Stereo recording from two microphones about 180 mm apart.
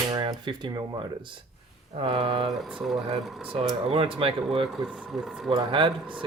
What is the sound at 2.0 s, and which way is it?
Speech, 30° right (ahead or behind).